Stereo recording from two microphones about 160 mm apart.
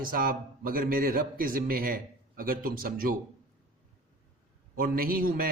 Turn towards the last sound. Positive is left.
turn(degrees=-65)  # may be behind; listen again after turning